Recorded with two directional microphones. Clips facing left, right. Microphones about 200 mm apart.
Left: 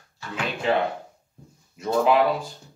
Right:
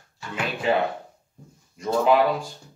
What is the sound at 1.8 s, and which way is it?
Speech, centre (ahead or behind).